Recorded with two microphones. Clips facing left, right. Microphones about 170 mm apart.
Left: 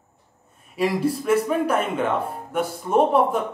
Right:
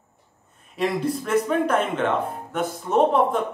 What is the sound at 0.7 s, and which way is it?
Speech, 5° left (ahead or behind).